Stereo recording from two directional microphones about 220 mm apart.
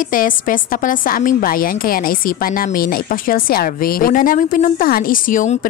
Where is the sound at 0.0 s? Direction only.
40° left (ahead or behind).